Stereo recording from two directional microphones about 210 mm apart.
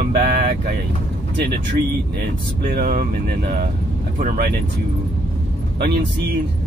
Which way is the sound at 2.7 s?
45° right (ahead or behind).